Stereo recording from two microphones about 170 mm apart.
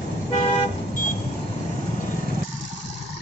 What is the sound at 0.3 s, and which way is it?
Vehicle, 45° left (ahead or behind).